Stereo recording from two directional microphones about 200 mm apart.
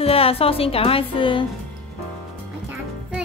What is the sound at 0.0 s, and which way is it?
A woman's voice, 30° left (ahead or behind).